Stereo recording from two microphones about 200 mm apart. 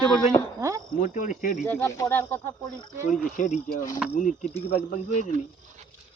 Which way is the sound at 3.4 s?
40° left (ahead or behind).